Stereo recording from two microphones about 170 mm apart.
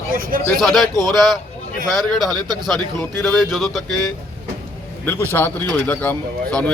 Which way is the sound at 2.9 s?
Centre (ahead or behind).